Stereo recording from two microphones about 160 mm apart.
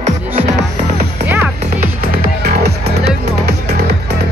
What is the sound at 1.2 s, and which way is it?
Music, 10° right (ahead or behind).